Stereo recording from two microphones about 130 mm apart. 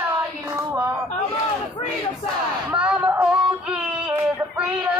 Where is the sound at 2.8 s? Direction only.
10° right (ahead or behind).